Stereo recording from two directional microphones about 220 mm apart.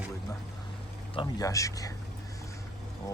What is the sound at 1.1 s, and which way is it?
Speech, 15° left (ahead or behind).